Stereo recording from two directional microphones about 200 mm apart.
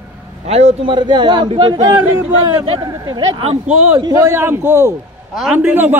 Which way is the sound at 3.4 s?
30° right (ahead or behind).